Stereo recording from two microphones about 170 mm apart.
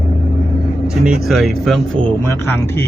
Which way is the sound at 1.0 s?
Centre (ahead or behind).